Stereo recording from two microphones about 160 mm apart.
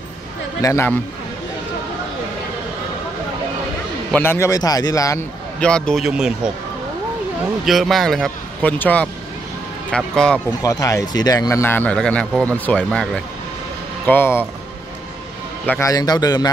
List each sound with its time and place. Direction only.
0.6 s speech: 15° left (ahead or behind)
4.1 s a man's voice: 15° left (ahead or behind)
5.6 s a man's voice: 5° left (ahead or behind)
7.6 s a man's voice: centre (ahead or behind)
10.6 s speech: 20° left (ahead or behind)
15.6 s a man's voice: 10° left (ahead or behind)
15.9 s a man's voice: 25° left (ahead or behind)